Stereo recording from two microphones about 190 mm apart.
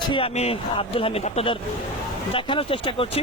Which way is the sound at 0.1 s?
30° left (ahead or behind).